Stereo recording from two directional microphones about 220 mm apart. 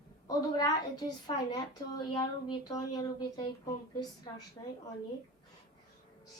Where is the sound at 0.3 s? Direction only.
15° left (ahead or behind).